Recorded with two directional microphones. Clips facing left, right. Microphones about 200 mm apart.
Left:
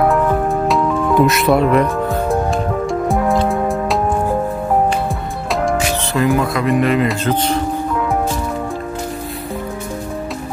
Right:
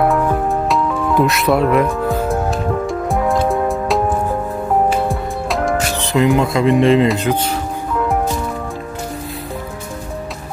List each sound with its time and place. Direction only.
0.1 s music: centre (ahead or behind)
6.1 s speech: 20° right (ahead or behind)
7.2 s speech: 10° right (ahead or behind)